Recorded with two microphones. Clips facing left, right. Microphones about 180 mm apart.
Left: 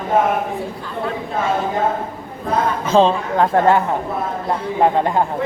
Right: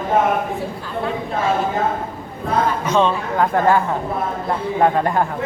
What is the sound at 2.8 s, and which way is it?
A woman's voice, 30° left (ahead or behind).